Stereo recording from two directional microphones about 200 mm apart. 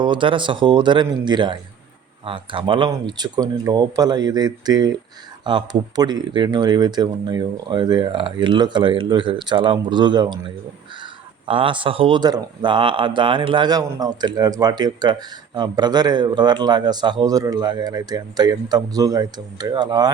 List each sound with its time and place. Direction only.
0.0 s speech: 25° right (ahead or behind)
11.4 s speech: 25° right (ahead or behind)